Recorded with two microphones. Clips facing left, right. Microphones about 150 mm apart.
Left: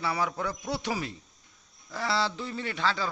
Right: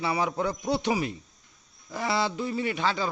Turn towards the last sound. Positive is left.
turn(degrees=-15)  # may be behind; listen again after turning